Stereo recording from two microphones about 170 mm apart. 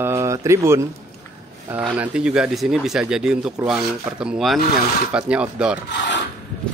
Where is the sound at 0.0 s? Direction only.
15° right (ahead or behind).